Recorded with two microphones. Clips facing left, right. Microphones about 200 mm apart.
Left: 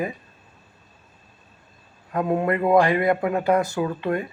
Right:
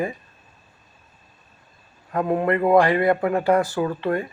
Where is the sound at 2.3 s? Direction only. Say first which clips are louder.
Right 1 dB; 15° left (ahead or behind).